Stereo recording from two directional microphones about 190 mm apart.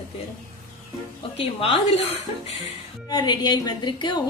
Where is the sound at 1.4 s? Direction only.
35° left (ahead or behind).